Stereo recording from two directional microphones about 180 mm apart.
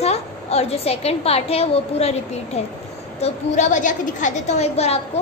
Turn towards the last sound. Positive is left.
turn(degrees=35)  # may be behind; listen again after turning